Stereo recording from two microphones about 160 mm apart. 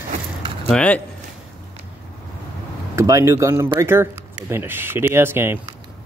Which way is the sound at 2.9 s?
20° right (ahead or behind).